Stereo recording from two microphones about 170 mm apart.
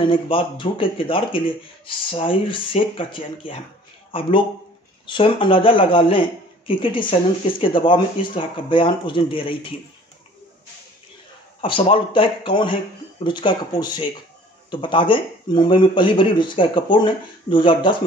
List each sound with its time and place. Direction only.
0.0 s speech: 30° left (ahead or behind)
11.6 s speech: 30° left (ahead or behind)